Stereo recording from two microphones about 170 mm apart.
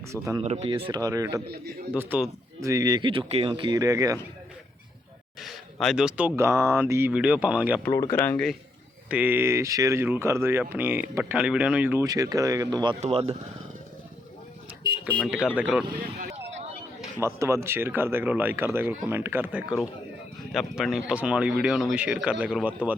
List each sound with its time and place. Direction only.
0.1 s speech: 15° right (ahead or behind)
0.4 s speech: 35° right (ahead or behind); by 1.4 s 20° right (ahead or behind)
1.9 s speech: 10° right (ahead or behind)
5.4 s speech: centre (ahead or behind)
8.1 s speech: 10° left (ahead or behind)
9.0 s speech: 10° right (ahead or behind)
12.0 s speech: 20° right (ahead or behind)
13.0 s speech: 35° right (ahead or behind)
15.5 s speech: 5° right (ahead or behind)
16.0 s speech: 60° right (ahead or behind)
17.2 s speech: 15° right (ahead or behind)
20.5 s speech: centre (ahead or behind)